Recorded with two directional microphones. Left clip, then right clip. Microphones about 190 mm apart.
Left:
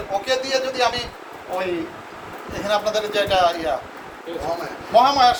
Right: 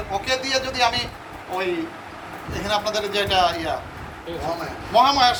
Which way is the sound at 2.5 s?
35° left (ahead or behind).